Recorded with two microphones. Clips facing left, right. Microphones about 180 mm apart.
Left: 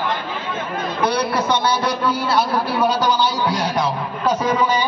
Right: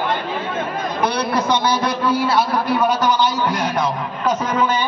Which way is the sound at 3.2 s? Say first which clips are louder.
Right 1 dB; 10° left (ahead or behind).